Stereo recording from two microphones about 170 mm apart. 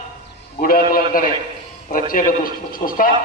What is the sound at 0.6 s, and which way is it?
A man's voice, 60° left (ahead or behind).